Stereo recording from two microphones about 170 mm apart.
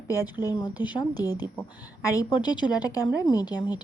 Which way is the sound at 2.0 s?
20° left (ahead or behind).